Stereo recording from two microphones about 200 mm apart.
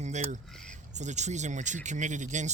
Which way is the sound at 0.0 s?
35° right (ahead or behind).